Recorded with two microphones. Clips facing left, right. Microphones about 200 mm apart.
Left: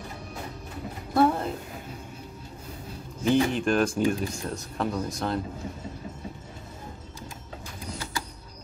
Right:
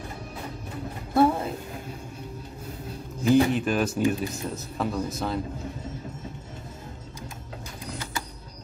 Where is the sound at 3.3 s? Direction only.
5° right (ahead or behind).